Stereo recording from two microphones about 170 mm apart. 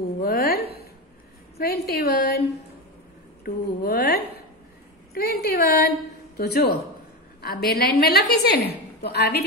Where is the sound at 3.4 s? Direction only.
65° left (ahead or behind).